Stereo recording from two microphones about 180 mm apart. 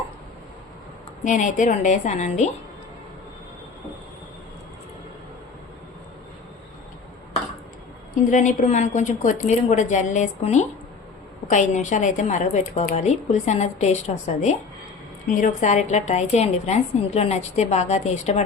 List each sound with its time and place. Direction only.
1.2 s a woman's voice: 45° left (ahead or behind)
8.2 s a woman's voice: 45° left (ahead or behind)
15.3 s a woman's voice: 45° left (ahead or behind)